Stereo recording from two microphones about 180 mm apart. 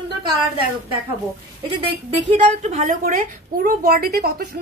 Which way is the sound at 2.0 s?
35° right (ahead or behind).